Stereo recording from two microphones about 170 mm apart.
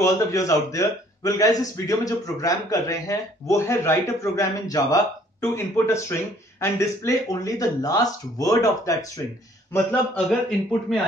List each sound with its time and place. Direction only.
0.0 s speech: 20° left (ahead or behind)
9.7 s a man's voice: 10° left (ahead or behind)